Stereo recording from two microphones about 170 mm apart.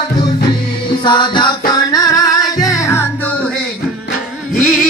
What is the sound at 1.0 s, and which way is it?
Music, 25° left (ahead or behind).